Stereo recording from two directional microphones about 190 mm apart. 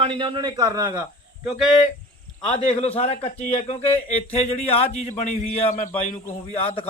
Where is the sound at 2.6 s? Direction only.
30° left (ahead or behind).